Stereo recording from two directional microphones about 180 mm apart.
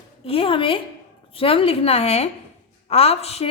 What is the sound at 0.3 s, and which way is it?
A woman's voice, 30° left (ahead or behind).